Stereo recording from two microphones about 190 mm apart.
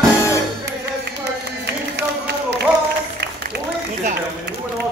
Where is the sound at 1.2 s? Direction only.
65° right (ahead or behind).